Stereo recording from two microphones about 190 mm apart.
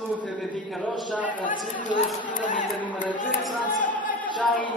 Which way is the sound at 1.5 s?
45° left (ahead or behind).